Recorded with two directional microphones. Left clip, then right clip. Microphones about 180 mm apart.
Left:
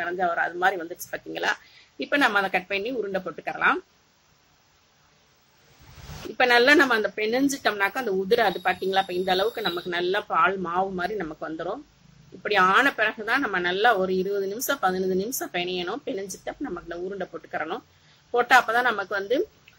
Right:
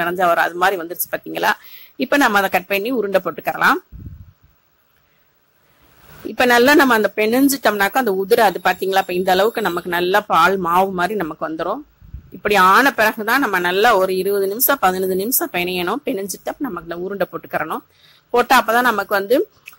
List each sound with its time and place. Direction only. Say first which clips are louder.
0.0 s a woman's voice: right 9 dB; 45° right (ahead or behind)
6.3 s a woman's voice: right 5 dB; 45° right (ahead or behind)